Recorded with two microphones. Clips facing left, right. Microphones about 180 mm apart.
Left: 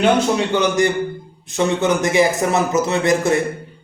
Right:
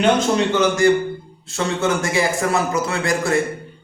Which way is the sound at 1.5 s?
20° left (ahead or behind).